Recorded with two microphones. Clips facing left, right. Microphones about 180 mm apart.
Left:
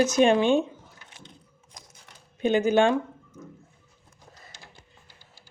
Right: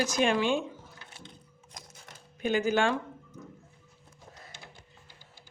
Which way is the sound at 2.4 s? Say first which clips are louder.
Left 6 dB; 20° left (ahead or behind).